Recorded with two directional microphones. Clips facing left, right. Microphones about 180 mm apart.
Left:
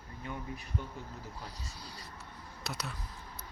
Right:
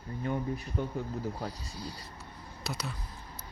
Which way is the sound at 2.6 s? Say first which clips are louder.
Right 3 dB; centre (ahead or behind).